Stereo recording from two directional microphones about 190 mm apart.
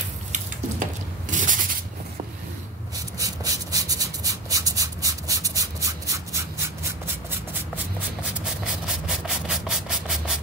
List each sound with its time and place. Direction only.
1.3 s rub: 45° right (ahead or behind)
3.2 s a sound: 20° right (ahead or behind)
8.6 s rub: centre (ahead or behind)